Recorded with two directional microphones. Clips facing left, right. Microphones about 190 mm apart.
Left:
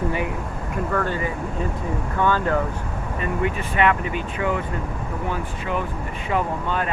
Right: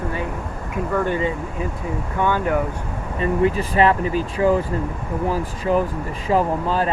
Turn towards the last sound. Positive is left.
turn(degrees=-35)  # may be behind; listen again after turning